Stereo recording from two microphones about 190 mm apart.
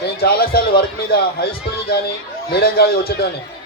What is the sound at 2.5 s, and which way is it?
Speech, 55° left (ahead or behind).